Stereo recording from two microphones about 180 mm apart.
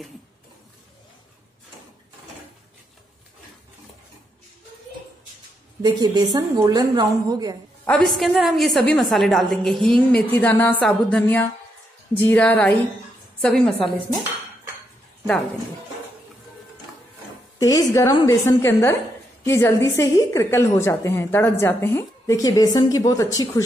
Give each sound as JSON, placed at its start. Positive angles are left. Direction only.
{"t": 5.8, "sound": "a woman's voice", "side_deg": -25}
{"t": 7.8, "sound": "a woman's voice", "side_deg": 5}
{"t": 17.6, "sound": "a woman's voice", "side_deg": 20}